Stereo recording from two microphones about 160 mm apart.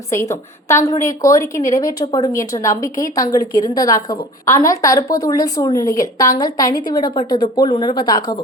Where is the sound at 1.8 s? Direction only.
25° left (ahead or behind).